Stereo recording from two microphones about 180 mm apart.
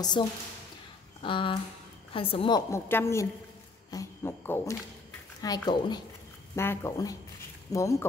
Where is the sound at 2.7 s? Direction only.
15° left (ahead or behind).